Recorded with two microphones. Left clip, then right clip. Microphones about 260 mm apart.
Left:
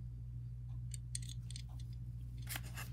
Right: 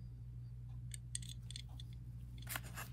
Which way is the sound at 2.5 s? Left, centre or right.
Centre.